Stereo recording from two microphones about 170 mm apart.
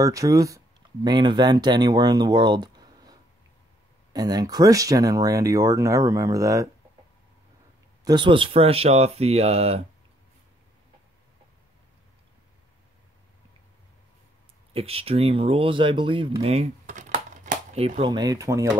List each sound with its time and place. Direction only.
0.0 s speech: 20° right (ahead or behind)
8.0 s speech: 25° right (ahead or behind)
14.7 s speech: 35° right (ahead or behind)
17.7 s speech: 35° right (ahead or behind); by 18.7 s 20° right (ahead or behind)